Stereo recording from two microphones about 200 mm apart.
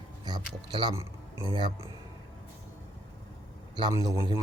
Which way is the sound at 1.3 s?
20° left (ahead or behind).